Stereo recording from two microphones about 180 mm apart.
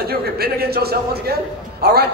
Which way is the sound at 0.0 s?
60° right (ahead or behind).